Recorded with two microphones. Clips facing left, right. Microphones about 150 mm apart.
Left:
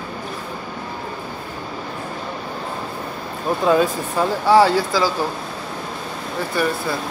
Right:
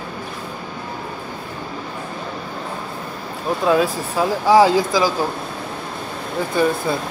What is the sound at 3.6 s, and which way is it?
Speech, 5° right (ahead or behind).